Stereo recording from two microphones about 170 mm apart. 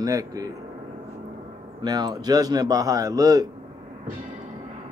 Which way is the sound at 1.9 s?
25° right (ahead or behind).